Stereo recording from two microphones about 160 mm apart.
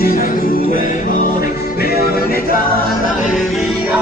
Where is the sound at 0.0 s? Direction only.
70° left (ahead or behind).